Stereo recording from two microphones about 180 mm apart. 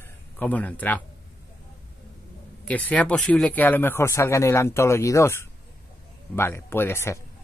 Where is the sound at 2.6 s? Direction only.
10° left (ahead or behind).